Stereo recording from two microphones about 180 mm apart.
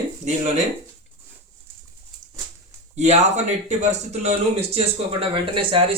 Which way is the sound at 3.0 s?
40° right (ahead or behind).